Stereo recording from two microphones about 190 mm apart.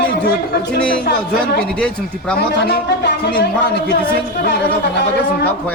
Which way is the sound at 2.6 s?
60° left (ahead or behind).